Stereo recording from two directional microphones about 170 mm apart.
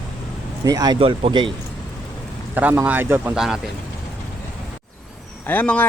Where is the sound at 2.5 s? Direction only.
10° right (ahead or behind).